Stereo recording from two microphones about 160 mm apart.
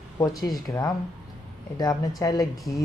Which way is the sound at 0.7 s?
25° left (ahead or behind).